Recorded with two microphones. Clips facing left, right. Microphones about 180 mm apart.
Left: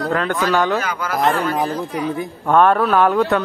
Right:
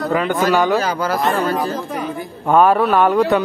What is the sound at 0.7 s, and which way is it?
Speech, 35° right (ahead or behind).